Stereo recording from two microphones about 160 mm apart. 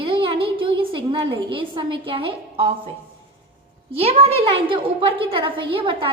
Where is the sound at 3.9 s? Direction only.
35° right (ahead or behind).